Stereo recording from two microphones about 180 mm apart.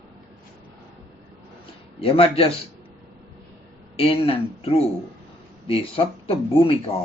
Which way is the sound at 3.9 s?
30° left (ahead or behind).